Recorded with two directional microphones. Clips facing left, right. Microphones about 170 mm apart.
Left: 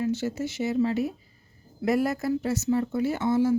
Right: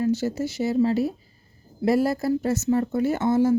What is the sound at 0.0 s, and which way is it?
Speech, 40° right (ahead or behind).